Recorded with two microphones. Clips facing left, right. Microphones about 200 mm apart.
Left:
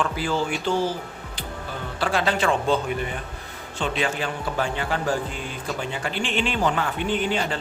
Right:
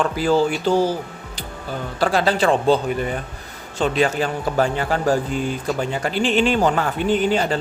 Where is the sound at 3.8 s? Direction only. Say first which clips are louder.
Right 7 dB; 40° right (ahead or behind).